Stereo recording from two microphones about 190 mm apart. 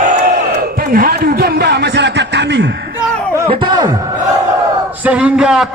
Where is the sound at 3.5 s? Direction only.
25° right (ahead or behind).